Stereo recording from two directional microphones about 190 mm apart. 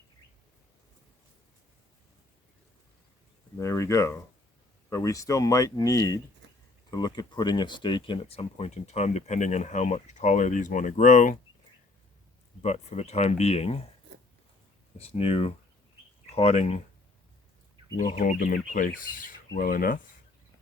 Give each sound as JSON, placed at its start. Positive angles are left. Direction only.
{"t": 3.6, "sound": "speech", "side_deg": 15}
{"t": 12.6, "sound": "speech", "side_deg": 35}
{"t": 14.9, "sound": "speech", "side_deg": 30}
{"t": 18.1, "sound": "speech", "side_deg": 40}
{"t": 18.3, "sound": "speech", "side_deg": 50}